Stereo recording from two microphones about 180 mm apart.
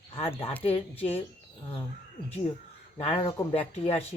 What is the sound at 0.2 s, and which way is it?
Speech, 30° left (ahead or behind).